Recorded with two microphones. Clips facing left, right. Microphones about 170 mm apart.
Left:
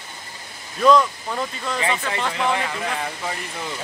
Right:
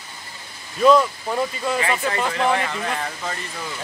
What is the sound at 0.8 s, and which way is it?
Speech, 5° right (ahead or behind).